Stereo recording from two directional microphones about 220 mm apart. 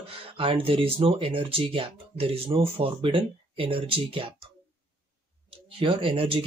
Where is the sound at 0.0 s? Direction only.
25° right (ahead or behind).